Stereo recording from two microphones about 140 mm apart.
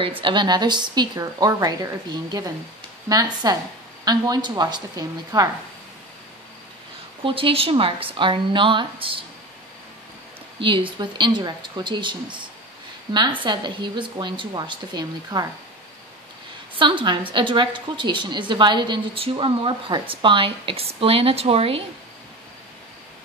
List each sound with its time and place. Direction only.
0.2 s a woman's voice: 35° right (ahead or behind)
7.2 s a woman's voice: 40° right (ahead or behind)
10.6 s a woman's voice: 35° right (ahead or behind)
16.7 s a woman's voice: 35° right (ahead or behind)